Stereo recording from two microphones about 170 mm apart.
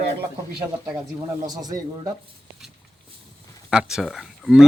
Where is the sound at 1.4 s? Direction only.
20° right (ahead or behind).